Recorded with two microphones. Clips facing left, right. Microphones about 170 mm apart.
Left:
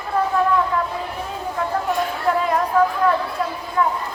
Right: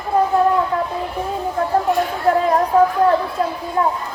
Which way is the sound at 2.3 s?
40° right (ahead or behind).